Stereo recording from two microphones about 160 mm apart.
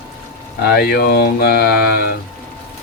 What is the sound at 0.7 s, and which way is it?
Speech, 80° left.